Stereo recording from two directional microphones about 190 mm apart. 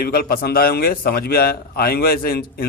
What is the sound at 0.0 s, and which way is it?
A man's voice, 50° left (ahead or behind).